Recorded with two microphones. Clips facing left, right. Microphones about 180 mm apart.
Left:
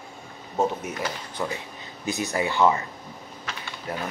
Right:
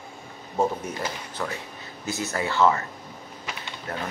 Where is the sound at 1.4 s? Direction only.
15° left (ahead or behind).